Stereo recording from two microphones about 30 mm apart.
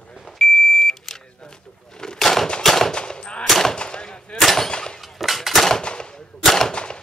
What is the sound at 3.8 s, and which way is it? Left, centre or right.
Gunshot, left.